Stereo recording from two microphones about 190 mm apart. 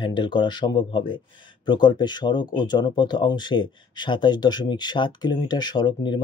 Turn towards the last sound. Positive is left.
turn(degrees=25)  # may be behind; listen again after turning